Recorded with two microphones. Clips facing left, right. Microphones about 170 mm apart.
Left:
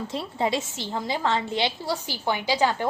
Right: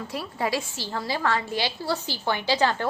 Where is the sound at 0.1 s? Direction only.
25° left (ahead or behind).